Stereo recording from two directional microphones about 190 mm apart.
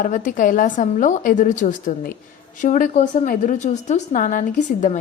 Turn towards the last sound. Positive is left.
turn(degrees=40)  # may be behind; listen again after turning